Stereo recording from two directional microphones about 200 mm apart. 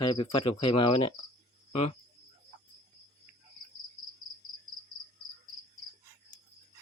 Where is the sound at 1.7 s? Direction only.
35° left (ahead or behind).